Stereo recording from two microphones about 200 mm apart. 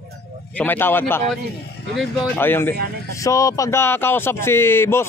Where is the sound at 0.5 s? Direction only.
10° left (ahead or behind).